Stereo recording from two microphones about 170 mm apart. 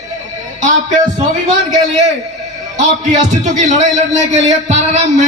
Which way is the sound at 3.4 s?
45° right (ahead or behind).